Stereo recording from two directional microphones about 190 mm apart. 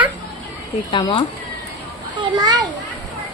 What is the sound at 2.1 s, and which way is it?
Speech, 20° right (ahead or behind).